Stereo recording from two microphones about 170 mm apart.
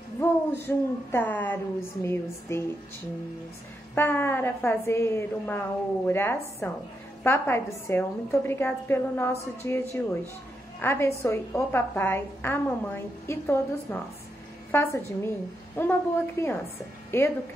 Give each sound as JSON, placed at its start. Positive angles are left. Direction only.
{"t": 0.2, "sound": "a woman's voice", "side_deg": 15}
{"t": 3.9, "sound": "a woman's voice", "side_deg": 15}